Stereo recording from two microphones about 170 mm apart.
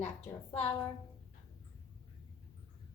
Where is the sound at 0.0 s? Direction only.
40° left (ahead or behind).